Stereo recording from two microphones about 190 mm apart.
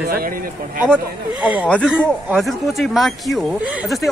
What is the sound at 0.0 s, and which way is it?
Speech, 50° right (ahead or behind).